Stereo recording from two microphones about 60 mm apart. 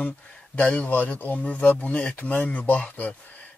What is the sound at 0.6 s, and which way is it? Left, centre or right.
Speech, left.